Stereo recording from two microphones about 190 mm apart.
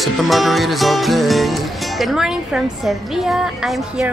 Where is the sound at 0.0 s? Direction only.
Centre (ahead or behind).